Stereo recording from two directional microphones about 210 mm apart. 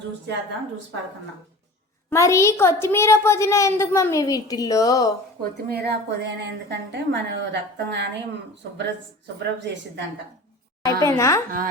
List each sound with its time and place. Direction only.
2.0 s a woman's voice: 15° left (ahead or behind)
5.4 s a woman's voice: 50° right (ahead or behind)
10.8 s a woman's voice: 15° left (ahead or behind)